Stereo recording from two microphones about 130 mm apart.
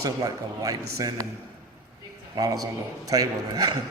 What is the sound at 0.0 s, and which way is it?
A man's voice, 25° right (ahead or behind).